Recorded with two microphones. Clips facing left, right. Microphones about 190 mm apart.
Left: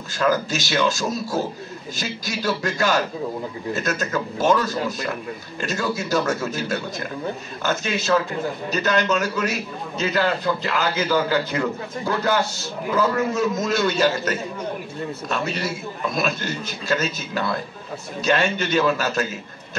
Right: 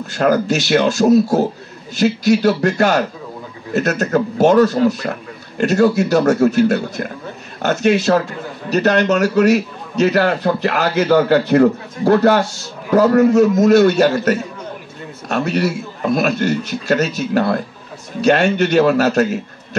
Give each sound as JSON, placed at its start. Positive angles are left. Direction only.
{"t": 0.1, "sound": "a man's voice", "side_deg": -60}